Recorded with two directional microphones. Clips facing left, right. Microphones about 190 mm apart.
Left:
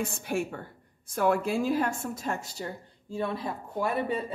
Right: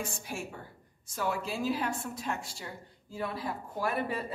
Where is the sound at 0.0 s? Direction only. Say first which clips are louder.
Left 8 dB; 60° left (ahead or behind); by 2.7 s 40° left (ahead or behind).